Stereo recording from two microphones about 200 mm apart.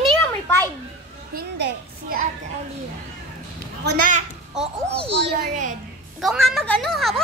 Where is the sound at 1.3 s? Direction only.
50° right (ahead or behind).